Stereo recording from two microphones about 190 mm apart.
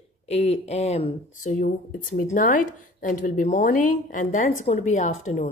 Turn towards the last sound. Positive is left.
turn(degrees=40)  # may be behind; listen again after turning